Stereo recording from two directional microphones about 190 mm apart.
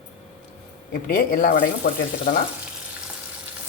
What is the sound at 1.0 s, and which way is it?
Speech, 50° left (ahead or behind).